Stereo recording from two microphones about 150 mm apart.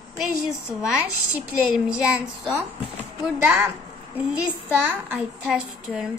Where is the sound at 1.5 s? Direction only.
5° right (ahead or behind).